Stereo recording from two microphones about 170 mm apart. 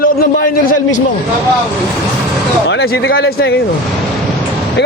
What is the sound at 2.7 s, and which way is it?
Speech, 80° left.